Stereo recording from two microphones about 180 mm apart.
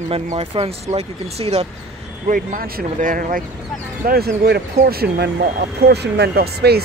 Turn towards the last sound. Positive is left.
turn(degrees=-60)  # may be behind; listen again after turning